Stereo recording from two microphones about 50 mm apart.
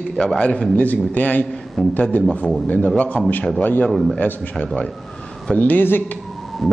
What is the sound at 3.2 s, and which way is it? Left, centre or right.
Speech, centre.